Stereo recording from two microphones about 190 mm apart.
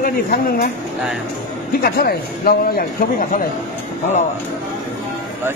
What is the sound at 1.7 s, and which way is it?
Speech, 50° left (ahead or behind).